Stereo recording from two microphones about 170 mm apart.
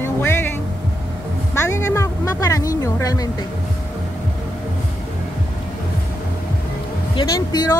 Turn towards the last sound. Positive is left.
turn(degrees=25)  # may be behind; listen again after turning